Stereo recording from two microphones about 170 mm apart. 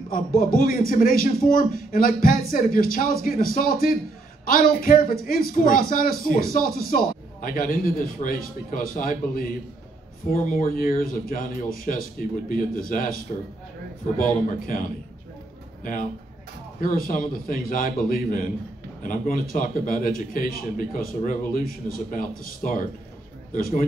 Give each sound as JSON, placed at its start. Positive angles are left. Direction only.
{"t": 0.4, "sound": "a man's voice", "side_deg": 55}
{"t": 16.8, "sound": "a man's voice", "side_deg": 55}